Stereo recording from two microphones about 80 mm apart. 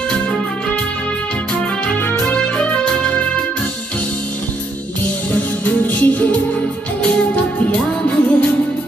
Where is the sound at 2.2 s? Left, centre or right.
Centre.